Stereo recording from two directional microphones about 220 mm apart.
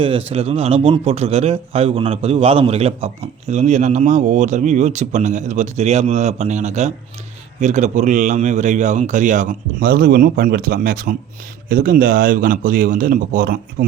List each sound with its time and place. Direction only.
0.3 s a man's voice: 25° right (ahead or behind)